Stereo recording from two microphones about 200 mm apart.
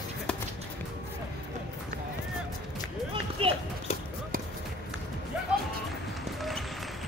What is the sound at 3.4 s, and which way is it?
Horse, 25° right (ahead or behind).